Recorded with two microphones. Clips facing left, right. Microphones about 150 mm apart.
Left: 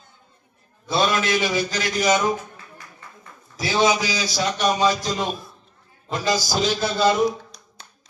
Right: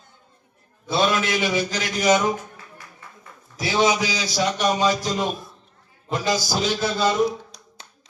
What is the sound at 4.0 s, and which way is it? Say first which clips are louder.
A man's voice: right 1 dB; 20° right (ahead or behind).